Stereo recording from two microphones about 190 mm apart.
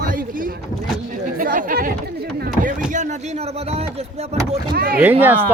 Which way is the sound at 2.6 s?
40° right (ahead or behind).